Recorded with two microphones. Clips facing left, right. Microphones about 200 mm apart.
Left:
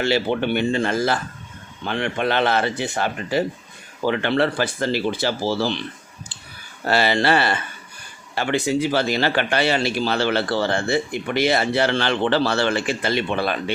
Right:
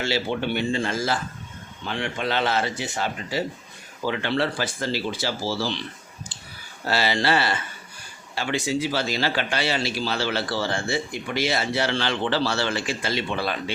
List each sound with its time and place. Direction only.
0.0 s a man's voice: 60° left (ahead or behind)
6.8 s a man's voice: 55° left (ahead or behind)